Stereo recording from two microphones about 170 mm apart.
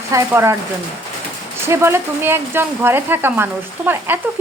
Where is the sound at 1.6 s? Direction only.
15° right (ahead or behind).